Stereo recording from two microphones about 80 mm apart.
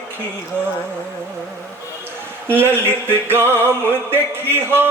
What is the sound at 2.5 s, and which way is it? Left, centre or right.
Music, right.